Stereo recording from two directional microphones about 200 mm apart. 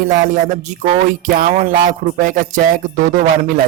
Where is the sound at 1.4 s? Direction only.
40° right (ahead or behind).